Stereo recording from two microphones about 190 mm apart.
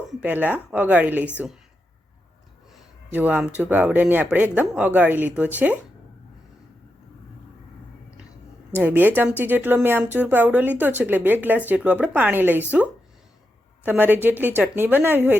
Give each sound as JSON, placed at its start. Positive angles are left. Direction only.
{"t": 0.1, "sound": "speech", "side_deg": -5}
{"t": 3.1, "sound": "speech", "side_deg": -10}
{"t": 8.7, "sound": "speech", "side_deg": -10}
{"t": 13.8, "sound": "speech", "side_deg": -10}